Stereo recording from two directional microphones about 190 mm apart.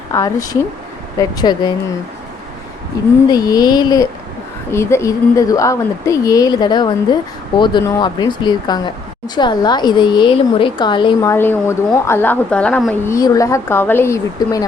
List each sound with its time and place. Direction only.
0.1 s a woman's voice: 15° left (ahead or behind)
3.2 s a woman's voice: 20° left (ahead or behind)